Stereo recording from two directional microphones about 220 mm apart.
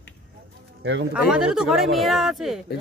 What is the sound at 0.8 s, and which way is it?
Speech, 50° right (ahead or behind).